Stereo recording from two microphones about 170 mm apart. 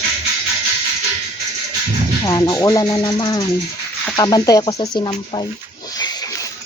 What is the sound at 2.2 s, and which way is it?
Speech, 20° left (ahead or behind).